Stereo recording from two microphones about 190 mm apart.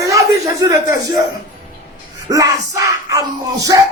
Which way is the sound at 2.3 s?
20° right (ahead or behind).